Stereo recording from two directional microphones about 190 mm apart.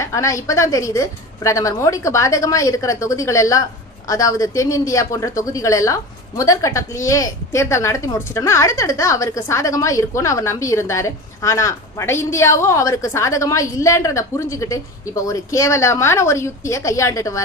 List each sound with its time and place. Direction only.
0.0 s a woman's voice: 15° left (ahead or behind)